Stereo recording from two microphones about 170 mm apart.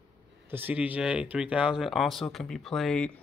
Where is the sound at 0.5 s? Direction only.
10° right (ahead or behind).